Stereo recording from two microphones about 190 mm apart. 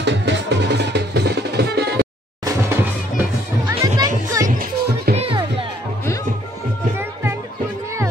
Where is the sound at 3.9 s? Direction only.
20° right (ahead or behind).